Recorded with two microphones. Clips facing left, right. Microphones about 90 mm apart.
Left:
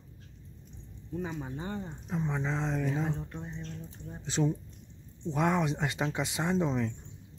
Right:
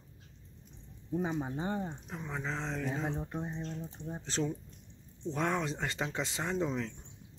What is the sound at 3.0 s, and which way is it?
Speech, 20° right (ahead or behind).